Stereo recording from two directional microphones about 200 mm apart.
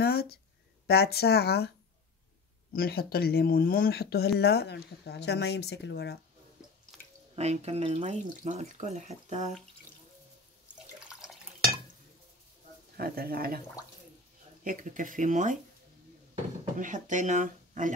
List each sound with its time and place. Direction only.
0.0 s a sound: 50° left (ahead or behind)
0.8 s speech: 55° left (ahead or behind)
2.7 s speech: 50° left (ahead or behind)
6.9 s drip: centre (ahead or behind)
7.3 s speech: 30° right (ahead or behind)
11.1 s drip: 5° right (ahead or behind)
12.9 s speech: 50° right (ahead or behind)
14.6 s speech: 40° right (ahead or behind)
16.7 s speech: 40° right (ahead or behind)